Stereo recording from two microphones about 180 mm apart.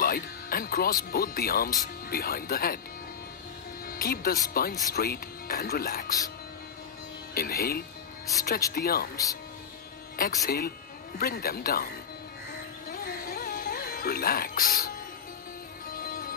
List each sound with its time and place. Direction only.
0.0 s speech: 55° left (ahead or behind)
3.8 s speech: 50° left (ahead or behind)
7.3 s speech: 55° left (ahead or behind)
9.1 s speech: 20° left (ahead or behind)
10.1 s speech: 55° left (ahead or behind)
12.8 s music: 55° left (ahead or behind)